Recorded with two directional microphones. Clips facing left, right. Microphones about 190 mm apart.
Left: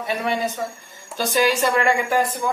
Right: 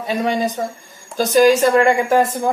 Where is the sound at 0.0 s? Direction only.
35° right (ahead or behind).